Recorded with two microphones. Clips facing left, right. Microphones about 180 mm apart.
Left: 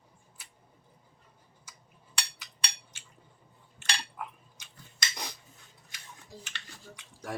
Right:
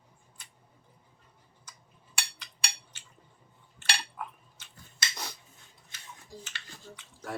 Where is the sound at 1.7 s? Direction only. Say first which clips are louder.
Right 1 dB; 10° left (ahead or behind).